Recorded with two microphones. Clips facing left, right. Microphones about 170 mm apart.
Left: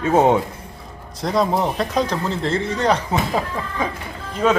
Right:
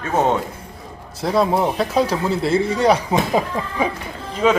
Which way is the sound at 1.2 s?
5° right (ahead or behind).